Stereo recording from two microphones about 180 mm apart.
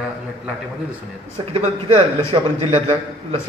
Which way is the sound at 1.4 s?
35° right (ahead or behind).